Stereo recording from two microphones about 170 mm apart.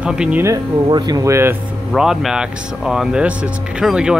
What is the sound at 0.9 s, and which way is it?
Speech, 25° right (ahead or behind).